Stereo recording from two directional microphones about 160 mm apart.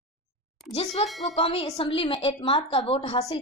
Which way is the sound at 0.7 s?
40° left (ahead or behind).